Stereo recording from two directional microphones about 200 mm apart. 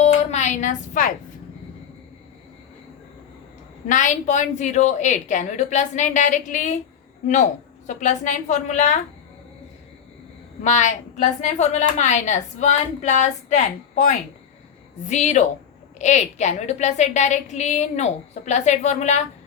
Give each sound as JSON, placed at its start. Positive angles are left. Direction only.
{"t": 0.0, "sound": "music", "side_deg": 35}
{"t": 3.8, "sound": "a woman's voice", "side_deg": 40}
{"t": 10.6, "sound": "a woman's voice", "side_deg": 35}